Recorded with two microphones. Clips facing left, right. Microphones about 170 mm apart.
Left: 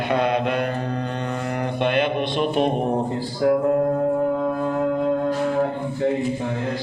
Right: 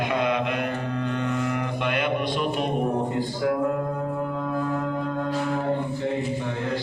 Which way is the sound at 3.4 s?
40° left (ahead or behind).